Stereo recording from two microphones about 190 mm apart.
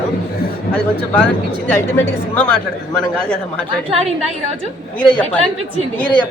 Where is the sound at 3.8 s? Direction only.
30° right (ahead or behind).